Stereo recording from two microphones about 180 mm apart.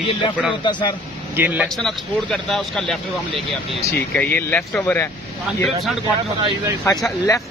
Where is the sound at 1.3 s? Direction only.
10° right (ahead or behind).